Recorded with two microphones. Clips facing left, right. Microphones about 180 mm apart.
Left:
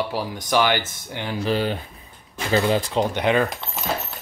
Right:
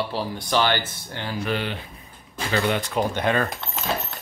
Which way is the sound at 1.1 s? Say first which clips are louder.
Left 4 dB; 15° left (ahead or behind).